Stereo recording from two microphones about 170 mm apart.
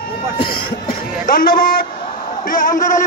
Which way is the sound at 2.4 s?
50° left (ahead or behind).